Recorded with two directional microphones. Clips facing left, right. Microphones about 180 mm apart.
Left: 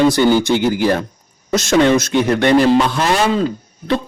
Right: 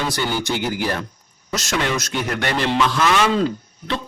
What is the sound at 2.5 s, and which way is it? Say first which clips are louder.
A man's voice: left 5 dB; 35° left (ahead or behind).